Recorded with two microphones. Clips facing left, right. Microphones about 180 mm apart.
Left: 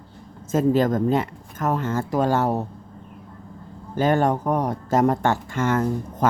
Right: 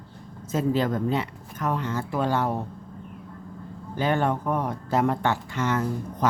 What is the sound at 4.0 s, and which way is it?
Speech, 45° left (ahead or behind).